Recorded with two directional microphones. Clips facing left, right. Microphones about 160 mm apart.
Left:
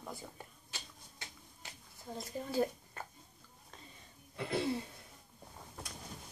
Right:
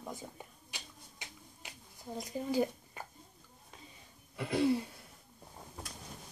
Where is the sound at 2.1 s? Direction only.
15° right (ahead or behind).